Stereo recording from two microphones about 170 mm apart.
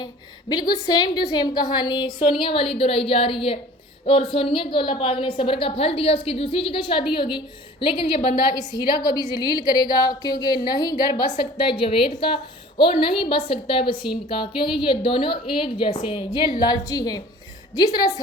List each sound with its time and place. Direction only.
0.0 s a woman's voice: 25° left (ahead or behind)